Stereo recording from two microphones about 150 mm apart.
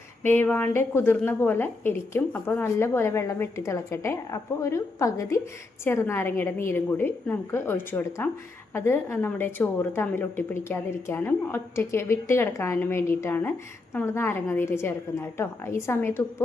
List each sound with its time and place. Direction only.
0.2 s a woman's voice: 15° left (ahead or behind)